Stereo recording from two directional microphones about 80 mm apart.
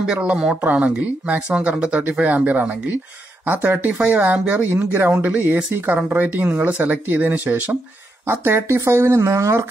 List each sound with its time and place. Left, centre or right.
0.0 s speech: centre
8.3 s speech: right